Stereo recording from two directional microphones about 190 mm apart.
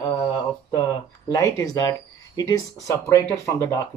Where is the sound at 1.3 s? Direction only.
15° left (ahead or behind).